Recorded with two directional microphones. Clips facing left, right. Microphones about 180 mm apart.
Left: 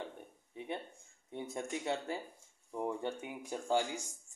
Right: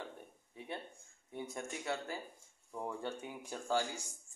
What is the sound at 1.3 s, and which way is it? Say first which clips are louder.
A man's voice: left 3 dB; 25° left (ahead or behind).